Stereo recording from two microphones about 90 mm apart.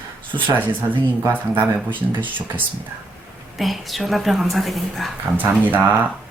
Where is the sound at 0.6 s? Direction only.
20° right (ahead or behind).